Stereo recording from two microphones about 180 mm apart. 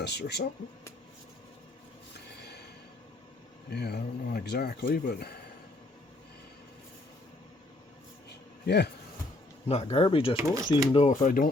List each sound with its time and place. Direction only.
0.0 s speech: 70° left (ahead or behind)
3.7 s speech: 60° left (ahead or behind)
8.6 s speech: 65° left (ahead or behind)
9.6 s speech: 35° left (ahead or behind)
10.3 s speech: 15° right (ahead or behind)
10.9 s speech: 40° left (ahead or behind)